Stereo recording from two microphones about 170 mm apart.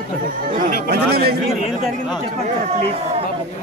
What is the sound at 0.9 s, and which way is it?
Speech, 70° right (ahead or behind).